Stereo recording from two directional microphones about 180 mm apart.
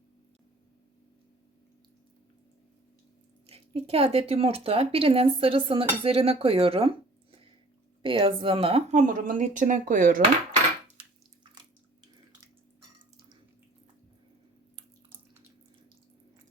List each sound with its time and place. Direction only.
3.4 s speech: 35° right (ahead or behind)